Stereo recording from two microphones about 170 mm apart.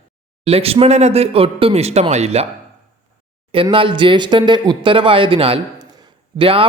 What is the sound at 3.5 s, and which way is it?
A man's voice, 30° right (ahead or behind).